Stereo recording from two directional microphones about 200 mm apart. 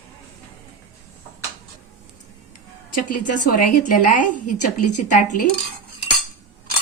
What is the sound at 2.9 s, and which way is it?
A woman's voice, 40° left (ahead or behind).